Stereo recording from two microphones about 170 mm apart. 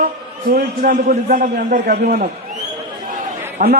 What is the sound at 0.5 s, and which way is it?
A man's voice, 65° right (ahead or behind).